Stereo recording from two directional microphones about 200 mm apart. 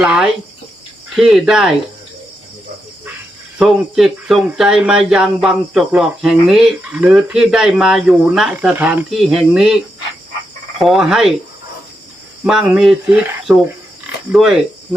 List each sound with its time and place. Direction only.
0.0 s speech: 5° right (ahead or behind)
3.6 s speech: centre (ahead or behind)
10.8 s speech: centre (ahead or behind)
12.5 s speech: 5° right (ahead or behind)